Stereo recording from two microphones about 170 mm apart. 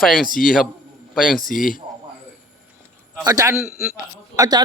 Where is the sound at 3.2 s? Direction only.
20° right (ahead or behind).